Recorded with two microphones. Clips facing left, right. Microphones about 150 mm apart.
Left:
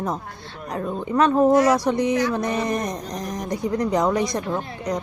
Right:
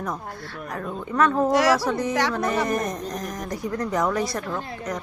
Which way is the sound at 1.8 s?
15° left (ahead or behind).